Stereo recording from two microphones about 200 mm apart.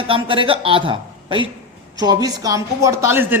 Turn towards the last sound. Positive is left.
turn(degrees=-10)  # may be behind; listen again after turning